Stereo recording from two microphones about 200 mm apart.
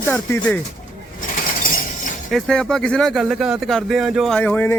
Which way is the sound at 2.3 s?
Centre (ahead or behind).